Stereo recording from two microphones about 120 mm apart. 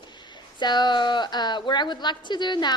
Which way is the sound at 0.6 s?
35° left (ahead or behind).